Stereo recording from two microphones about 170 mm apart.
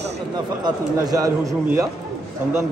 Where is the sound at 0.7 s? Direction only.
20° right (ahead or behind).